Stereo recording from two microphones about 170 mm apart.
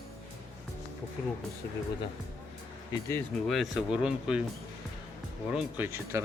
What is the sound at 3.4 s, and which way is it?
Speech, centre (ahead or behind).